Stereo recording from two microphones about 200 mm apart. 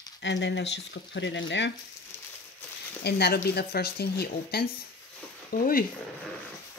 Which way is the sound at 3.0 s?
55° left (ahead or behind).